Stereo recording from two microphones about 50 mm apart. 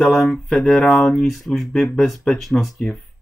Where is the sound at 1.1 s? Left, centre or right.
Centre.